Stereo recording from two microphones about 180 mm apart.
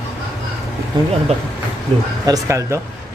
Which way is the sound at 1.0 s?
25° right (ahead or behind).